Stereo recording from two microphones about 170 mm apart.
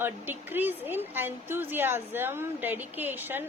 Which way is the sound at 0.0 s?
10° right (ahead or behind).